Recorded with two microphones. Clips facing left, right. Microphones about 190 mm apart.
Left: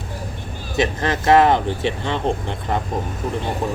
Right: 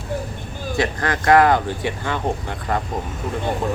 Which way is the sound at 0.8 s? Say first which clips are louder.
Left 2 dB; 25° left (ahead or behind).